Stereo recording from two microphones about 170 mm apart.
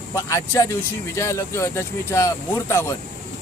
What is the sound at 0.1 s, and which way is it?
Speech, 20° left (ahead or behind).